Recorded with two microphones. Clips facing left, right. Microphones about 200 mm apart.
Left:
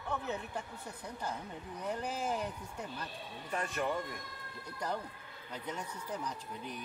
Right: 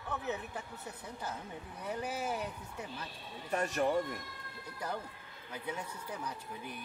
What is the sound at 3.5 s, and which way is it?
Speech, 40° right (ahead or behind).